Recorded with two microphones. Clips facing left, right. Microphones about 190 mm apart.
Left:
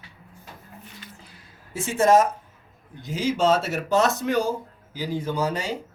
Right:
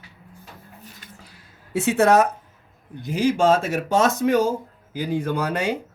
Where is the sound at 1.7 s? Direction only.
65° right (ahead or behind).